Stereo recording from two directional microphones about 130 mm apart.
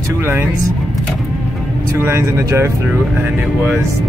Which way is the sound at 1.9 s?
20° right (ahead or behind).